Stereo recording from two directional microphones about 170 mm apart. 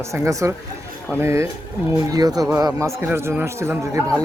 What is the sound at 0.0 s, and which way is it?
A man's voice, 20° right (ahead or behind).